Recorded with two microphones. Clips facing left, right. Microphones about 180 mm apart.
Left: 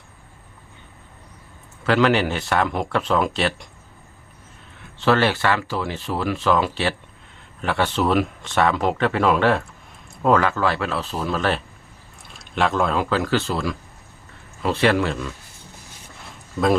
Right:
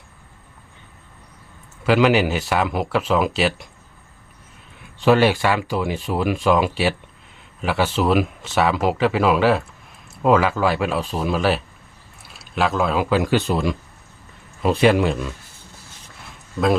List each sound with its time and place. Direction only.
1.9 s speech: 10° right (ahead or behind)
4.9 s speech: 15° right (ahead or behind)